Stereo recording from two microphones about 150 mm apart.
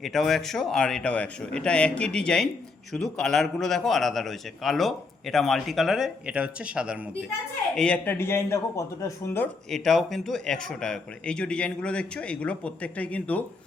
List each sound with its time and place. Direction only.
0.0 s a man's voice: centre (ahead or behind)
7.8 s a man's voice: 10° left (ahead or behind)
9.6 s a man's voice: 5° left (ahead or behind)